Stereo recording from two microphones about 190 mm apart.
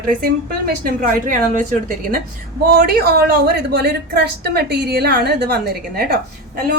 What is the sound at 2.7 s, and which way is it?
A woman's voice, 60° right (ahead or behind).